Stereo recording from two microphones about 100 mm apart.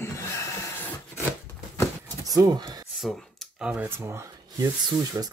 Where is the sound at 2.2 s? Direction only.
35° right (ahead or behind).